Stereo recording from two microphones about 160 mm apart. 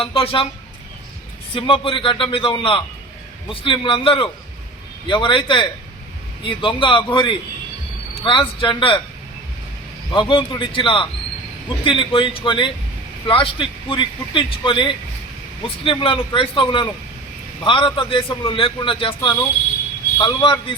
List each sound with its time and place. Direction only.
0.0 s a man's voice: 35° left (ahead or behind)
1.5 s a man's voice: 35° left (ahead or behind)
10.1 s a man's voice: 30° left (ahead or behind)